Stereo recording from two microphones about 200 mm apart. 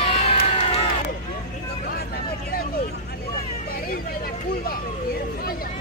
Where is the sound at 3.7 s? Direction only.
50° left (ahead or behind).